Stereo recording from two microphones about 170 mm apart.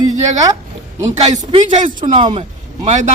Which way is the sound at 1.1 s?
40° right (ahead or behind).